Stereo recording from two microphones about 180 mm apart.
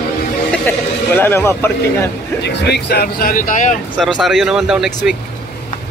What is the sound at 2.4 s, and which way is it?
Speech, 70° left (ahead or behind).